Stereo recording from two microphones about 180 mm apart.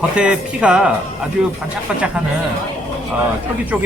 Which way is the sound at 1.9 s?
5° right (ahead or behind).